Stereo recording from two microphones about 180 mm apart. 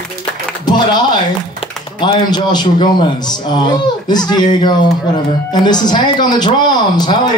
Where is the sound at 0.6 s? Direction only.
25° left (ahead or behind).